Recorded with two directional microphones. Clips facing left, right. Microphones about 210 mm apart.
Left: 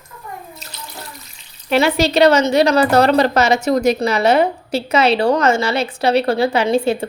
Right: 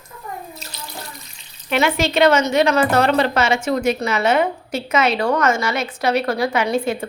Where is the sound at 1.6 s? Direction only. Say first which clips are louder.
Left 4 dB; 35° left (ahead or behind).